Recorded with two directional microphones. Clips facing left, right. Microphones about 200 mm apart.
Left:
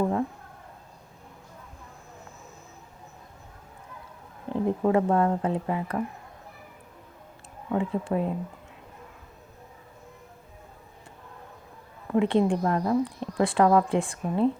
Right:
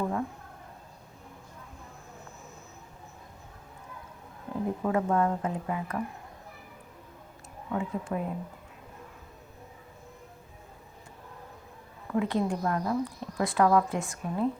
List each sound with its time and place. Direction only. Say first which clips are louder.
4.5 s a sound: left 5 dB; 25° left (ahead or behind)
4.8 s speech: left 4 dB; 30° left (ahead or behind)
7.7 s speech: left 5 dB; 35° left (ahead or behind)
12.1 s a woman's voice: left 6 dB; 25° left (ahead or behind)